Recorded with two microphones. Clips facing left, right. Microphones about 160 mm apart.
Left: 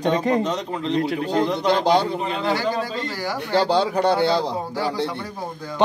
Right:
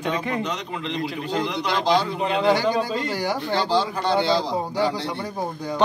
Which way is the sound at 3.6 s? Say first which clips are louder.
Left 4 dB; 65° left (ahead or behind).